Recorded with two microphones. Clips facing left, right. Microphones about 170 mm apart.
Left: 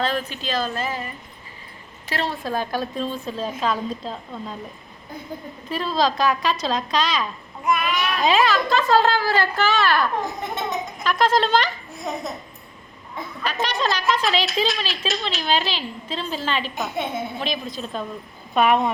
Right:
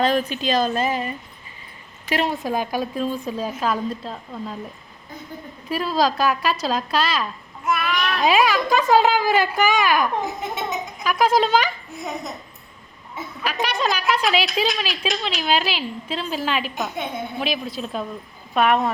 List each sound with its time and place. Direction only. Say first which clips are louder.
0.0 s a woman's voice: right 5 dB; 15° right (ahead or behind)
5.6 s a woman's voice: right 1 dB; 10° right (ahead or behind)
7.6 s child singing: left 1 dB; 15° left (ahead or behind)
8.2 s a woman's voice: right 1 dB; 10° right (ahead or behind)
10.2 s a child's voice: even; centre (ahead or behind)
14.7 s a woman's voice: right 1 dB; centre (ahead or behind)
16.7 s a woman's voice: left 1 dB; 5° left (ahead or behind)
17.4 s a woman's voice: right 2 dB; 5° right (ahead or behind)